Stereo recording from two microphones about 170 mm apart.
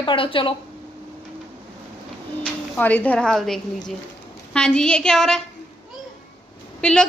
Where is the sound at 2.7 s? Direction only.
10° left (ahead or behind).